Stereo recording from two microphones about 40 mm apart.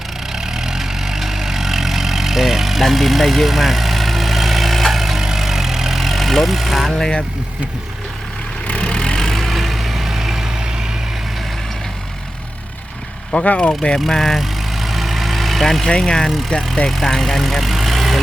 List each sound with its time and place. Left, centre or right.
0.3 s vehicle: centre
8.6 s vehicle: left
8.9 s vehicle: centre
9.5 s vehicle: centre
13.3 s speech: left
14.1 s speech: centre
14.3 s vehicle: centre
15.9 s speech: centre
16.9 s speech: centre